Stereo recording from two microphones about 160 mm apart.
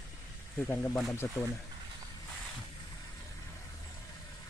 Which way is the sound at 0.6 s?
10° left (ahead or behind).